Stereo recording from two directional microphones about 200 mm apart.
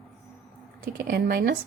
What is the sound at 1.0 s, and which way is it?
Speech, 45° right (ahead or behind).